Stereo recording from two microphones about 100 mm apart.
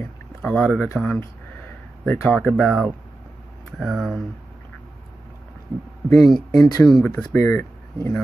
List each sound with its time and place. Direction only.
0.0 s rowboat: 15° left (ahead or behind)
1.0 s speech: 20° left (ahead or behind); by 4.2 s centre (ahead or behind)
6.1 s speech: centre (ahead or behind)
7.3 s speech: 25° left (ahead or behind)